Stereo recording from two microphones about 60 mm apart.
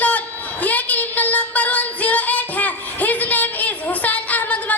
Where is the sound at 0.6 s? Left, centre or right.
Left.